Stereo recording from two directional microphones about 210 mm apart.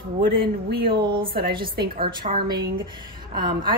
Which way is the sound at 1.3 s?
45° right (ahead or behind).